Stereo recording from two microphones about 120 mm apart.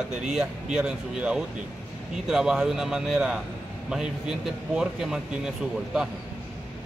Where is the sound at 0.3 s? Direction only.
10° right (ahead or behind).